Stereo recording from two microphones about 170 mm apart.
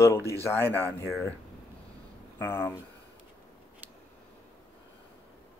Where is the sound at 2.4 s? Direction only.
15° left (ahead or behind).